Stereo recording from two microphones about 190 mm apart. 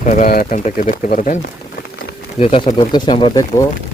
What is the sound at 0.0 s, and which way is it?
Speech, 40° left (ahead or behind).